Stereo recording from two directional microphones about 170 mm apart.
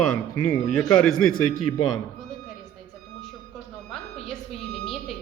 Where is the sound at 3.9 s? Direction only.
Centre (ahead or behind).